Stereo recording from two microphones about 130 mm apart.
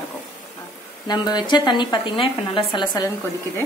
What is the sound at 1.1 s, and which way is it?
A woman's voice, 35° left (ahead or behind).